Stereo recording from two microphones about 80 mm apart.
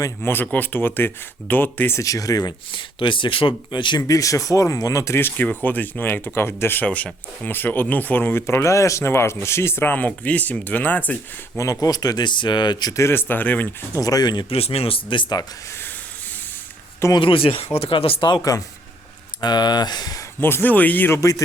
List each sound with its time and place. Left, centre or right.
0.2 s speech: left
2.0 s speech: left
2.7 s speech: left
4.0 s speech: left
5.1 s speech: left
11.5 s speech: left
13.0 s speech: left
13.9 s speech: left
14.9 s speech: left
17.2 s speech: left
17.9 s speech: left
19.4 s speech: left
20.4 s speech: left
21.2 s speech: left